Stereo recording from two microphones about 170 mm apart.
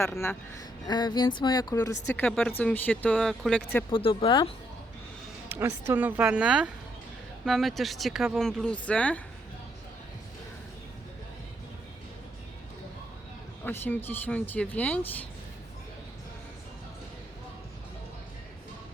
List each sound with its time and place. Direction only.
0.0 s speech: 15° left (ahead or behind)
3.8 s speech: 30° left (ahead or behind)
5.5 s a woman's voice: 15° right (ahead or behind); by 9.2 s 10° left (ahead or behind)
13.7 s speech: 10° left (ahead or behind)